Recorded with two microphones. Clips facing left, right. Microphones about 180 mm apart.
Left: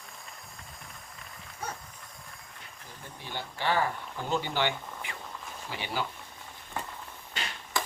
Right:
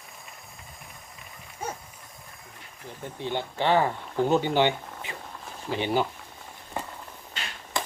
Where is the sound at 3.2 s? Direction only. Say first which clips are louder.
Right 6 dB; 20° right (ahead or behind).